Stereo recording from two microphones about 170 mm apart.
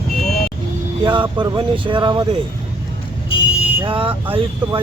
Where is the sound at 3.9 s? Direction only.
30° right (ahead or behind).